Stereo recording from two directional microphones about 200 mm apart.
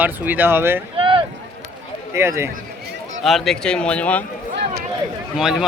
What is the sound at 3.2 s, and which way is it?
Speech, centre (ahead or behind).